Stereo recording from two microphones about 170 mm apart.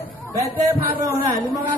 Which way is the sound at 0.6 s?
20° right (ahead or behind).